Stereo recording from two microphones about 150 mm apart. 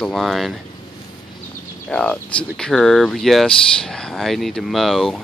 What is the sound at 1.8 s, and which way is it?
Speech, 5° left (ahead or behind).